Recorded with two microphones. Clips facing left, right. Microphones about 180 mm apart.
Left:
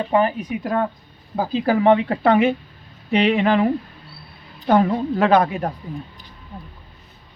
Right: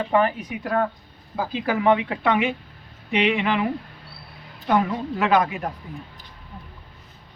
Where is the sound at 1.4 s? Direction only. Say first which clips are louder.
Left 5 dB; 35° left (ahead or behind).